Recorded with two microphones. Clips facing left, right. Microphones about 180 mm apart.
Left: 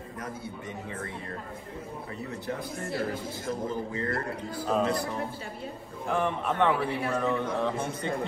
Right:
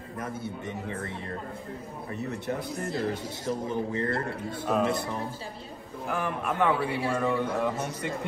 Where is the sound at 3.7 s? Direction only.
25° right (ahead or behind).